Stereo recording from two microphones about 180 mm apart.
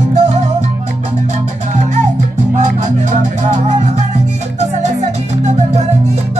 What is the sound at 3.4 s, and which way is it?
Music, 40° right (ahead or behind).